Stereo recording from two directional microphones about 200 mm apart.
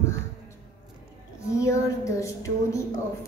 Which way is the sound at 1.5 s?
15° left (ahead or behind).